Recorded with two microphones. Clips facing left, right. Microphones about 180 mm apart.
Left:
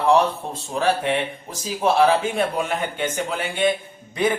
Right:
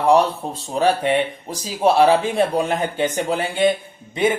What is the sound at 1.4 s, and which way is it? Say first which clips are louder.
Speech: right 2 dB; 35° right (ahead or behind).